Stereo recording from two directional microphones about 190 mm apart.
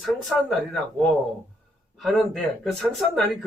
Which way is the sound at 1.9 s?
Centre (ahead or behind).